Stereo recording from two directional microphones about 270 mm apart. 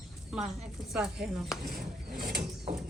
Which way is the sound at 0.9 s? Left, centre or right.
Centre.